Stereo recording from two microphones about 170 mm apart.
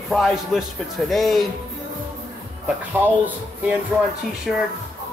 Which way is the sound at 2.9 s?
10° right (ahead or behind).